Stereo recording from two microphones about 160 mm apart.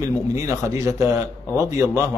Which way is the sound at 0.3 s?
20° right (ahead or behind).